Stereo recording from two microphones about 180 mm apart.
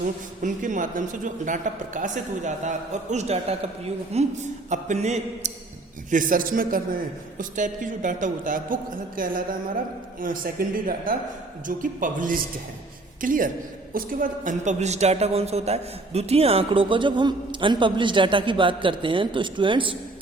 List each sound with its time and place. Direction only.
0.4 s a man's voice: 45° right (ahead or behind); by 20.0 s 30° right (ahead or behind)